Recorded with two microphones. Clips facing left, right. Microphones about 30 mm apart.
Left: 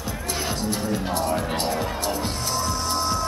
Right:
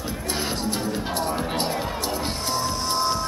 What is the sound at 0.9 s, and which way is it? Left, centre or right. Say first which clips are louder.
Music: left 1 dB; right.